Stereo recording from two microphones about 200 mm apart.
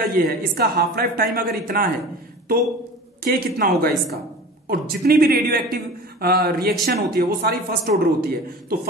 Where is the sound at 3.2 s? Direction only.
50° right (ahead or behind).